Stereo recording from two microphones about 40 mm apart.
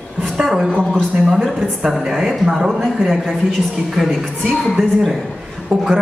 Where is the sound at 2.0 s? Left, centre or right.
Centre.